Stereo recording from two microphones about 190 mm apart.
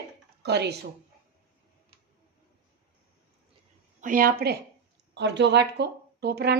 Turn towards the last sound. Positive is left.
turn(degrees=-55)  # may be behind; listen again after turning